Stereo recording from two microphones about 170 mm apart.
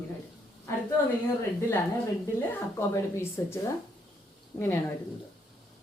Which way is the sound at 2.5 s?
15° left (ahead or behind).